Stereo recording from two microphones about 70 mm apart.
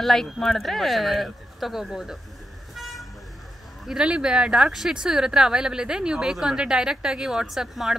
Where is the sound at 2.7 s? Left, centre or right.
Centre.